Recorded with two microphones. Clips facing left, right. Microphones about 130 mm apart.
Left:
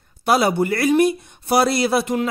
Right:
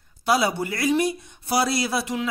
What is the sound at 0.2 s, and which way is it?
Speech, 55° left (ahead or behind).